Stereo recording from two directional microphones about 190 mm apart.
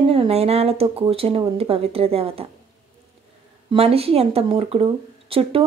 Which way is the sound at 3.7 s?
30° right (ahead or behind).